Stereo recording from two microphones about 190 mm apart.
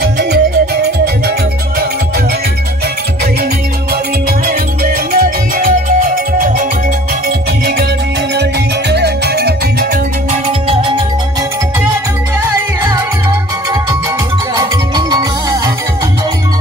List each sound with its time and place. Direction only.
0.0 s music: 60° right (ahead or behind)
5.1 s music: 50° right (ahead or behind)
10.3 s music: 30° right (ahead or behind)
14.5 s music: 20° right (ahead or behind)